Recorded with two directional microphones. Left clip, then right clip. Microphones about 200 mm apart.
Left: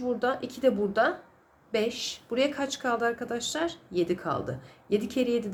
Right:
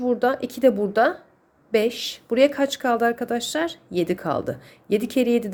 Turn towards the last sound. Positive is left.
turn(degrees=-40)  # may be behind; listen again after turning